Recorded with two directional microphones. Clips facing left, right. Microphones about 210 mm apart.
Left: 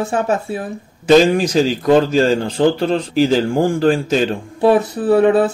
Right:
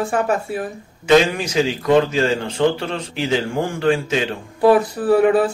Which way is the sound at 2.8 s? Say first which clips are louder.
Left 9 dB; 35° left (ahead or behind).